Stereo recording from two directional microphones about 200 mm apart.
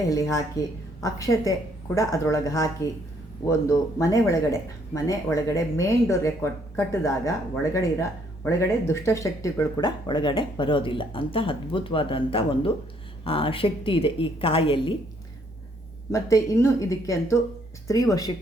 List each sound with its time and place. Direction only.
0.1 s a woman's voice: 15° left (ahead or behind)
16.1 s a woman's voice: 15° left (ahead or behind)